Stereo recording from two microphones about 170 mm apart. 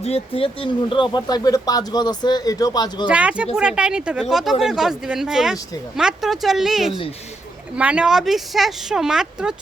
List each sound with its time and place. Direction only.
0.0 s speech: 35° left (ahead or behind)
3.1 s speech: 5° right (ahead or behind)